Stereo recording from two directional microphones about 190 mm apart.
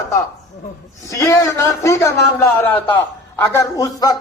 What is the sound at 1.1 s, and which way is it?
A man's voice, 15° left (ahead or behind).